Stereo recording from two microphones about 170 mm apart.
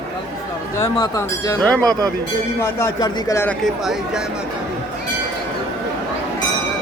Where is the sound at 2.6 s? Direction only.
20° left (ahead or behind).